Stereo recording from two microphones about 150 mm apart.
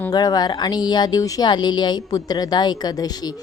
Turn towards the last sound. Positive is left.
turn(degrees=25)  # may be behind; listen again after turning